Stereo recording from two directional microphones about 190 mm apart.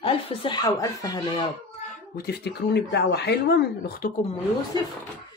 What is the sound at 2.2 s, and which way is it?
Speech, 60° left (ahead or behind).